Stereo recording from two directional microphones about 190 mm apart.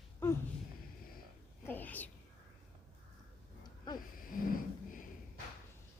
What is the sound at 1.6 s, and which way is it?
Speech, 10° left (ahead or behind).